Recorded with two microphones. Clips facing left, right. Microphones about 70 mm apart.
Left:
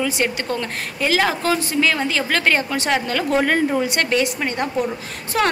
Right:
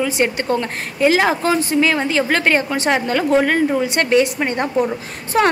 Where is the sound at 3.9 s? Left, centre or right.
Right.